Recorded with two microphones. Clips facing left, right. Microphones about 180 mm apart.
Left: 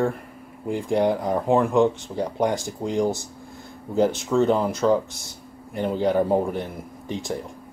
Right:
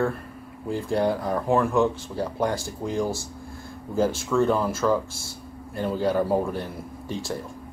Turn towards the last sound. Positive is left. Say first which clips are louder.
# left 2 dB
turn(degrees=20)  # may be behind; listen again after turning